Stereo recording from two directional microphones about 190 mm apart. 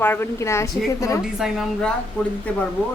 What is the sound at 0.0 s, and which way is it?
Speech, 10° left (ahead or behind).